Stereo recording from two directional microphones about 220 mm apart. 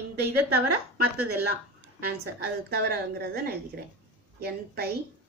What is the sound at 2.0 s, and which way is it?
A woman's voice, 45° right (ahead or behind).